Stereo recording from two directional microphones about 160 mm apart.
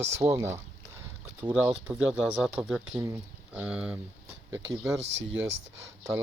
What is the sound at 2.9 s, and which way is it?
Speech, 20° right (ahead or behind).